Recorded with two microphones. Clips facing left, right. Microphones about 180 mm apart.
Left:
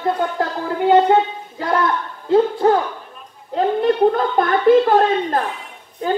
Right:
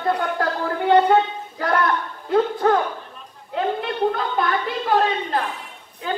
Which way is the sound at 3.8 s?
45° left (ahead or behind).